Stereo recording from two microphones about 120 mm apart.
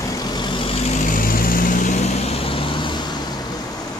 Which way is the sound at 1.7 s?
80° left.